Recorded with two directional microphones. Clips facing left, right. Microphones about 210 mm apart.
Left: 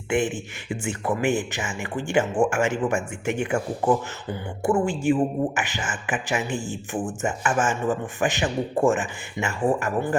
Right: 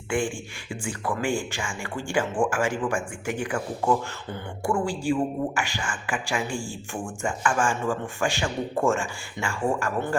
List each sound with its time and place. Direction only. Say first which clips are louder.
0.1 s a woman's voice: left 3 dB; 20° left (ahead or behind)